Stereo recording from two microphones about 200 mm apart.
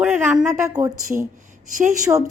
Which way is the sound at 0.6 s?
15° right (ahead or behind).